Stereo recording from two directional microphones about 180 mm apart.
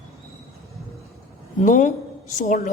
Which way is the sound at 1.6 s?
45° left (ahead or behind).